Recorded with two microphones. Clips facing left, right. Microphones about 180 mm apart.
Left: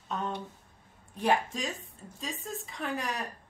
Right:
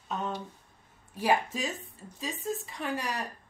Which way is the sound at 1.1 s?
5° right (ahead or behind).